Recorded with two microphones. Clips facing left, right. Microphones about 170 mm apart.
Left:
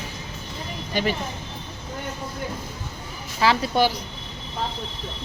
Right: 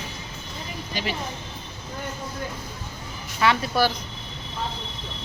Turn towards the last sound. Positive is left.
turn(degrees=30)  # may be behind; listen again after turning